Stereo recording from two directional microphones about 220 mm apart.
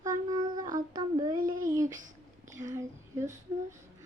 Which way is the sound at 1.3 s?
40° right (ahead or behind).